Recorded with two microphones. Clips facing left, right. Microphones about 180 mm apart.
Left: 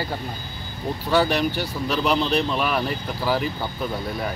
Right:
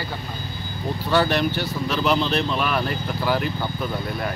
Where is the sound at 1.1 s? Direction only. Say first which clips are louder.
Even; 10° left (ahead or behind).